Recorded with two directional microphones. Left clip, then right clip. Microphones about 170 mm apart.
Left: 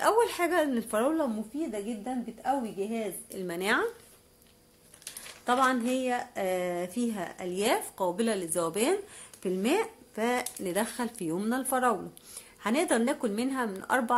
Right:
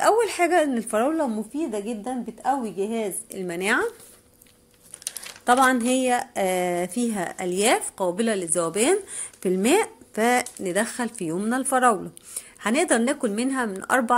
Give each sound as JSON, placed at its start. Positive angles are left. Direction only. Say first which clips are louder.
{"t": 0.0, "sound": "a woman's voice", "louder": "right 6 dB", "side_deg": -15}
{"t": 5.4, "sound": "a woman's voice", "louder": "right 7 dB", "side_deg": -25}
{"t": 9.4, "sound": "a woman's voice", "louder": "right 7 dB", "side_deg": -30}